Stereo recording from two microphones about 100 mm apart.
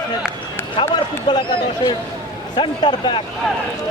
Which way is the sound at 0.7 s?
55° left (ahead or behind).